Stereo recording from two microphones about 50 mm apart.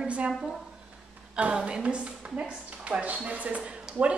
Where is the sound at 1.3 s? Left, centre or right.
Centre.